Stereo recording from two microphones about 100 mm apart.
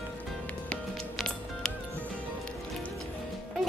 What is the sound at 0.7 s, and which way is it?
Music, 5° left (ahead or behind).